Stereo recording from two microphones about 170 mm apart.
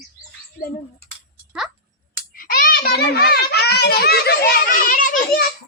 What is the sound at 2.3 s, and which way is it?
Children playing, 60° left (ahead or behind).